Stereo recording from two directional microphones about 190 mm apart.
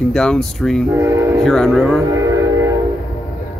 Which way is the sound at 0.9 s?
15° right (ahead or behind).